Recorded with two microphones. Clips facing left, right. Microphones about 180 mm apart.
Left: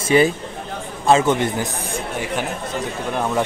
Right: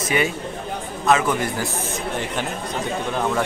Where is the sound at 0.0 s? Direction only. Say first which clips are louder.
Left 6 dB; 30° left (ahead or behind).